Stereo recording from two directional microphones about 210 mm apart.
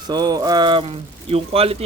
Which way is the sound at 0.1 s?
20° right (ahead or behind).